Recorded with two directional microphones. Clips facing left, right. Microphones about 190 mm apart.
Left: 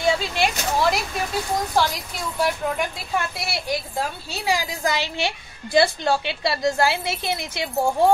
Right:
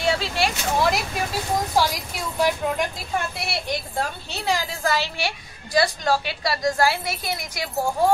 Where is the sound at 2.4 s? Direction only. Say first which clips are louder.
Right 1 dB; centre (ahead or behind).